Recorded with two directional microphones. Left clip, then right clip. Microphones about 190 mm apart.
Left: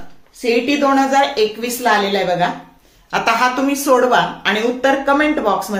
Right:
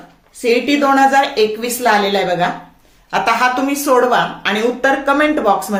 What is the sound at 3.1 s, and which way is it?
A woman's voice, 5° right (ahead or behind).